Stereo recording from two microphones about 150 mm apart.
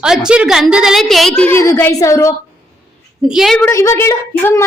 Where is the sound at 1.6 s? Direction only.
15° left (ahead or behind).